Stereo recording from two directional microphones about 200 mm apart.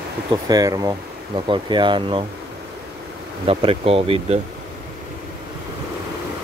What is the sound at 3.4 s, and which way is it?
Speech, 30° right (ahead or behind).